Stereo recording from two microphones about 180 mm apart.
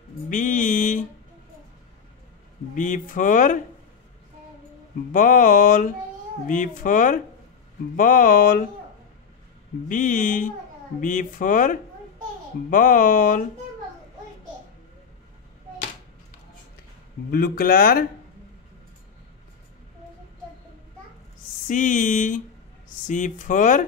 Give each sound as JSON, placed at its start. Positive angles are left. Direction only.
{"t": 0.3, "sound": "mantra", "side_deg": 45}
{"t": 2.7, "sound": "speech", "side_deg": 45}
{"t": 5.1, "sound": "speech", "side_deg": 45}
{"t": 9.8, "sound": "speech", "side_deg": 45}
{"t": 17.3, "sound": "speech", "side_deg": 55}
{"t": 21.6, "sound": "speech", "side_deg": 45}